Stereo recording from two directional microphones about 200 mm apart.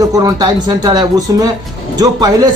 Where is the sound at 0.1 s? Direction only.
20° right (ahead or behind).